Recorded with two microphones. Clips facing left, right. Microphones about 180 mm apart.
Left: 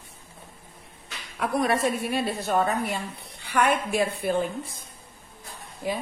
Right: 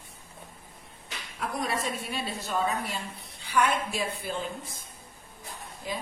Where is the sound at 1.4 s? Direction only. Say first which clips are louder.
Left 7 dB; 60° left (ahead or behind).